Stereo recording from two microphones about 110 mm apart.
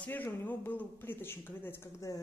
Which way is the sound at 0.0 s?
15° left (ahead or behind).